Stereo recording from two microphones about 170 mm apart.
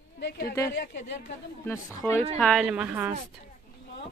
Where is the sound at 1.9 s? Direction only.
20° left (ahead or behind).